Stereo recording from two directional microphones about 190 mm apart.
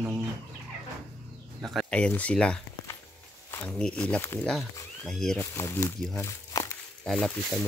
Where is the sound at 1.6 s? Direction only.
5° left (ahead or behind).